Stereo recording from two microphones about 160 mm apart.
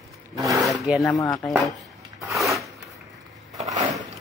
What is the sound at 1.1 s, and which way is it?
Speech, 20° left (ahead or behind).